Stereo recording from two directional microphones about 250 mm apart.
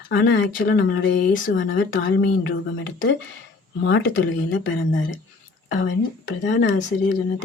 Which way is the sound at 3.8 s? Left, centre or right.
Left.